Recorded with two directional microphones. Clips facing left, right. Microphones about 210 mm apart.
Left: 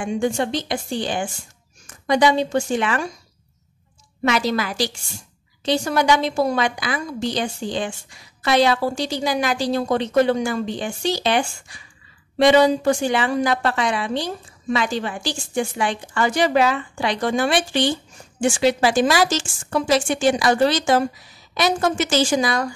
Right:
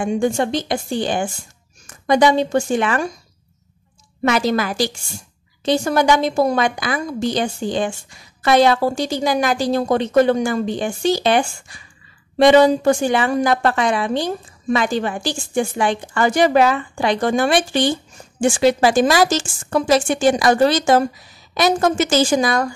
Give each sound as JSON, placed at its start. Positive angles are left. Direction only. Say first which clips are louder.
{"t": 0.0, "sound": "a woman's voice", "louder": "right 3 dB", "side_deg": -45}
{"t": 4.2, "sound": "a woman's voice", "louder": "right 3 dB", "side_deg": -45}